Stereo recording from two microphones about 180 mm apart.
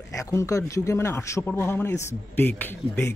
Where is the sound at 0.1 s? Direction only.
15° left (ahead or behind).